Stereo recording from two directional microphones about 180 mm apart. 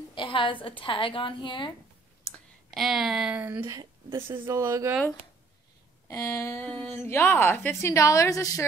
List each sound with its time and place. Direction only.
0.1 s a woman's voice: 25° left (ahead or behind)
2.3 s speech: centre (ahead or behind); by 4.9 s 15° right (ahead or behind)
6.0 s a woman's voice: 15° left (ahead or behind)